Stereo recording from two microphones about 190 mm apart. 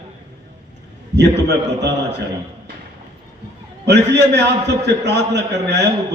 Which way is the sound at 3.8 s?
65° right (ahead or behind).